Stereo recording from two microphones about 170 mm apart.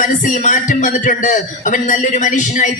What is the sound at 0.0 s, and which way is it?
A man's voice, 50° left (ahead or behind).